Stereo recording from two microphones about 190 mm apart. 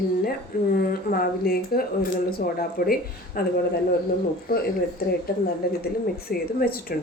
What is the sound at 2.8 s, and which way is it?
Speech, 50° left (ahead or behind).